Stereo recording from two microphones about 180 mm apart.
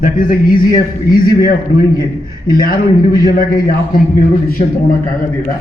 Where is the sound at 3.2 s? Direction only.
55° left (ahead or behind).